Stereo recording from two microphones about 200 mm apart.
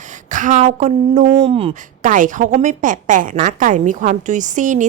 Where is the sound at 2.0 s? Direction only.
40° right (ahead or behind).